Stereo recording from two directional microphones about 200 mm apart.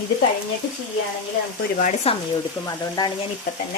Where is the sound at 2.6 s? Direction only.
20° left (ahead or behind).